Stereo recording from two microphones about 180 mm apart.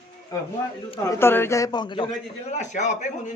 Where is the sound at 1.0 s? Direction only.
15° left (ahead or behind).